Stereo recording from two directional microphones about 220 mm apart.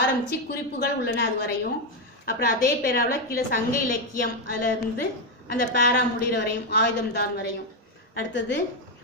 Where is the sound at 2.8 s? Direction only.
40° left (ahead or behind).